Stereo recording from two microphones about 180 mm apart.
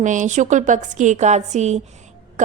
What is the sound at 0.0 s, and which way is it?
A woman's voice, 45° right (ahead or behind).